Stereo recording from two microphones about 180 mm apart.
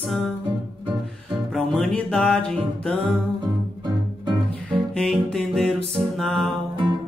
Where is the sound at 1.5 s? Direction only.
Centre (ahead or behind).